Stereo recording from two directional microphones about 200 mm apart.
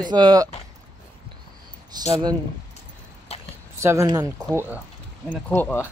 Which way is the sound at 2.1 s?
20° right (ahead or behind).